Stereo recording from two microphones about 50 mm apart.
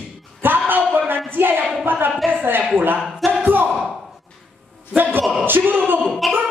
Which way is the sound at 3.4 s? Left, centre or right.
Right.